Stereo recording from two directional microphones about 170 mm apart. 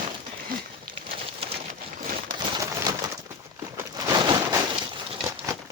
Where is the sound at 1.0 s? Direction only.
35° right (ahead or behind).